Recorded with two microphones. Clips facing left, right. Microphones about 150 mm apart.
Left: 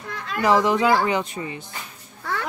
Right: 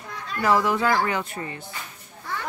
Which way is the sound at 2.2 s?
75° left (ahead or behind).